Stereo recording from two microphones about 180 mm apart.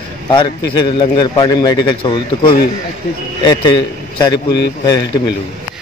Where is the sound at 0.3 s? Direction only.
25° left (ahead or behind).